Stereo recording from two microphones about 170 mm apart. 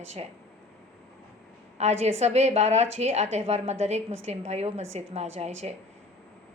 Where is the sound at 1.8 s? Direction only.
40° right (ahead or behind).